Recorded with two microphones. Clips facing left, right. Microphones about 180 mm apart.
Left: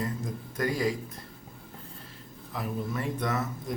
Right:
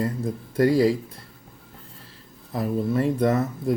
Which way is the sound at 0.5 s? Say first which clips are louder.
Right 10 dB; 30° right (ahead or behind).